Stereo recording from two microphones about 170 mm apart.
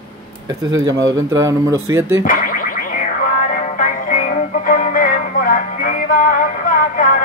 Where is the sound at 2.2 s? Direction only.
55° left (ahead or behind).